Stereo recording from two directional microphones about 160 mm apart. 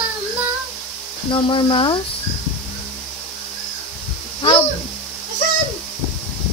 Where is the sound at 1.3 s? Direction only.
30° left (ahead or behind).